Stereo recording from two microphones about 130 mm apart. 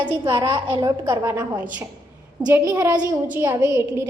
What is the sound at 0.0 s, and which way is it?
A woman's voice, 35° right (ahead or behind).